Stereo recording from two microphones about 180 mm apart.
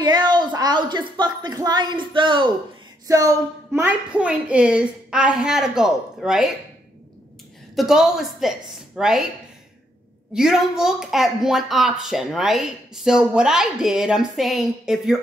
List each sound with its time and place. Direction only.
0.0 s a woman's voice: 25° right (ahead or behind); by 6.5 s 5° right (ahead or behind)
7.7 s speech: centre (ahead or behind)
10.3 s speech: centre (ahead or behind)